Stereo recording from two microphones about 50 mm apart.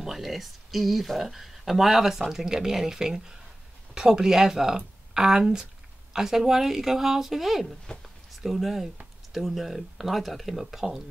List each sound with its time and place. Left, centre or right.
0.0 s speech: centre
7.9 s speech: left
8.4 s speech: centre